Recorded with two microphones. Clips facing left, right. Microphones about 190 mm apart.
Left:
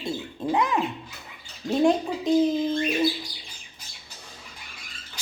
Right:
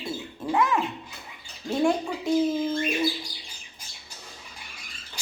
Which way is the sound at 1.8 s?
20° left (ahead or behind).